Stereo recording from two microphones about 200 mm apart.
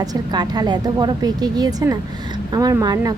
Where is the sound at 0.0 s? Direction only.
20° right (ahead or behind).